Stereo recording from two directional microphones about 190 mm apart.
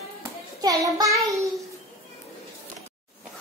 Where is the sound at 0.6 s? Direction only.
15° right (ahead or behind).